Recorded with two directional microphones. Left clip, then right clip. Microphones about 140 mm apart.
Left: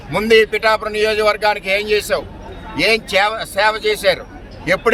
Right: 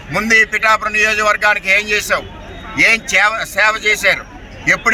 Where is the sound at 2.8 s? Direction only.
20° left (ahead or behind).